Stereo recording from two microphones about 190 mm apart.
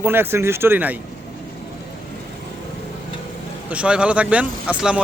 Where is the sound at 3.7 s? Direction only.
5° right (ahead or behind).